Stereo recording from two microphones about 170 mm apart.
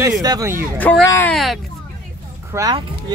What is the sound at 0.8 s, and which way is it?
Speech, 10° left (ahead or behind).